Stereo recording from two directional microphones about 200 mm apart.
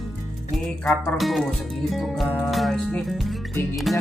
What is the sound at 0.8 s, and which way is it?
Speech, 5° left (ahead or behind).